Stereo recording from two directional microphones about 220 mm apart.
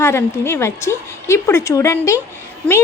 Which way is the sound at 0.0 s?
10° left (ahead or behind).